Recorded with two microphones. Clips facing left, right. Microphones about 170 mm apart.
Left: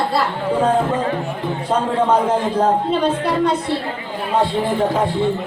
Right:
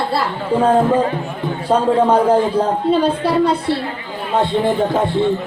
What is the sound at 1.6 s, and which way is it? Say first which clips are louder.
A man's voice: right 4 dB; 30° right (ahead or behind).